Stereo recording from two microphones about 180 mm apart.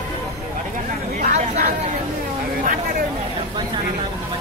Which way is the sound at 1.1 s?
40° right (ahead or behind).